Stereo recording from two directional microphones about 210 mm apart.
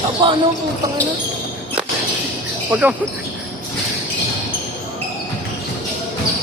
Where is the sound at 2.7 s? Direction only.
5° right (ahead or behind).